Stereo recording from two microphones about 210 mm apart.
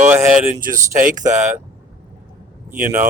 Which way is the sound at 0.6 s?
40° right (ahead or behind).